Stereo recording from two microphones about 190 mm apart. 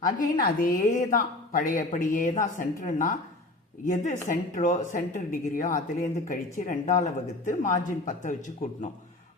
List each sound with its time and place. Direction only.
0.0 s a woman's voice: 50° left (ahead or behind)